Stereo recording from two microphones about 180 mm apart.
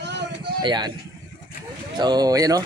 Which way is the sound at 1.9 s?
25° right (ahead or behind).